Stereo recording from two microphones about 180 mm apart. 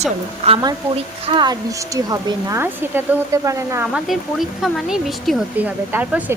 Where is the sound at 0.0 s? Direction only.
35° right (ahead or behind); by 3.8 s 15° right (ahead or behind).